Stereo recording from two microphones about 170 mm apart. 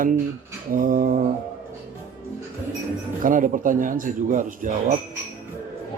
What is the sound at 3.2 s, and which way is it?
Speech, 50° right (ahead or behind).